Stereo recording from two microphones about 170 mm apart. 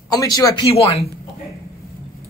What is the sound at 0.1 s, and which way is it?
Speech, 20° left (ahead or behind).